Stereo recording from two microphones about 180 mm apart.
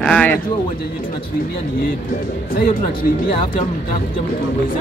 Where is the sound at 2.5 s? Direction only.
55° left (ahead or behind).